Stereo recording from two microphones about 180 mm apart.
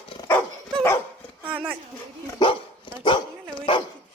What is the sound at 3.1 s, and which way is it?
Dog, 25° left (ahead or behind).